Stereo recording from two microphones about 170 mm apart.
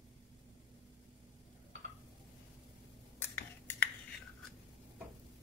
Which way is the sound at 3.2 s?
10° left (ahead or behind).